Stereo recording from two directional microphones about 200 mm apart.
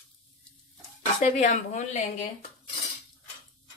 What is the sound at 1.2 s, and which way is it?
Speech, 35° left (ahead or behind).